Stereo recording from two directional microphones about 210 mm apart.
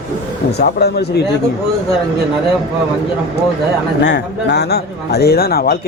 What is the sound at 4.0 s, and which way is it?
Speech, 55° left (ahead or behind).